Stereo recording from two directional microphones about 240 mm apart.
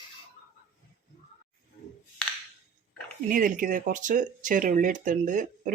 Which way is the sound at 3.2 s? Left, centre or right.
Right.